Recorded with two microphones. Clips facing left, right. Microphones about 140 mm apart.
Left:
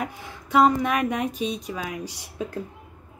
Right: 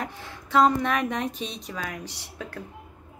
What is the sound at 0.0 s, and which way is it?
A woman's voice, 10° left (ahead or behind).